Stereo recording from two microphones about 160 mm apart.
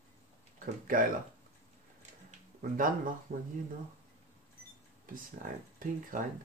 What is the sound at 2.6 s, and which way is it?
Speech, 60° right (ahead or behind).